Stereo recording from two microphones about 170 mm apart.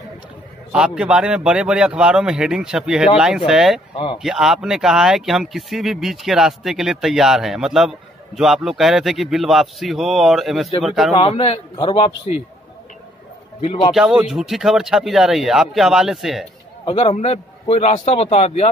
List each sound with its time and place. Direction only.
0.7 s speech: 5° right (ahead or behind)
3.9 s speech: 30° left (ahead or behind)
4.2 s speech: 5° right (ahead or behind)
11.1 s a man's voice: 35° left (ahead or behind)
13.6 s a man's voice: 35° left (ahead or behind)
13.9 s speech: 5° right (ahead or behind)
16.8 s a man's voice: 35° left (ahead or behind)